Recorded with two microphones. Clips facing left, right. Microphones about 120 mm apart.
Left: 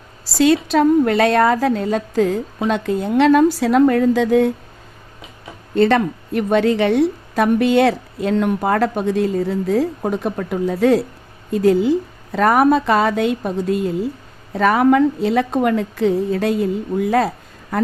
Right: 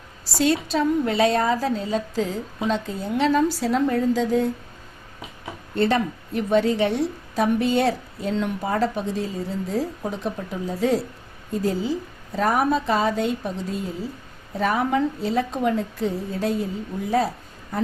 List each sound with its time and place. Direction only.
0.3 s a woman's voice: 90° left; by 4.5 s 70° left (ahead or behind)
5.7 s a woman's voice: 80° left
14.6 s a woman's voice: 80° left